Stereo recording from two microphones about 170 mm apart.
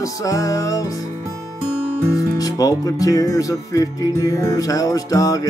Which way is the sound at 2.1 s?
20° left (ahead or behind).